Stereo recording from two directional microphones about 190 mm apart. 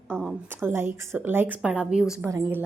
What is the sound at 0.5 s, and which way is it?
Speech, 10° right (ahead or behind).